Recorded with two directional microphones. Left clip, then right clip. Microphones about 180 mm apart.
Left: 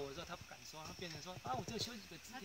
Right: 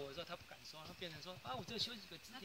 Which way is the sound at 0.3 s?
Centre (ahead or behind).